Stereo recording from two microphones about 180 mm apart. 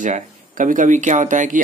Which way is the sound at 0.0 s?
45° right (ahead or behind).